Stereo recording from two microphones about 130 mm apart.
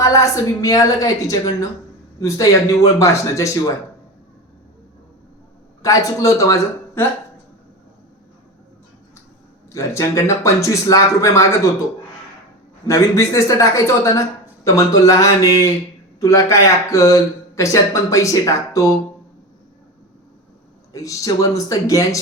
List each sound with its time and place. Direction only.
0.0 s speech: 25° left (ahead or behind)
5.8 s speech: 25° left (ahead or behind)
9.7 s speech: 25° left (ahead or behind)
12.9 s speech: 25° left (ahead or behind)
20.9 s speech: 25° left (ahead or behind)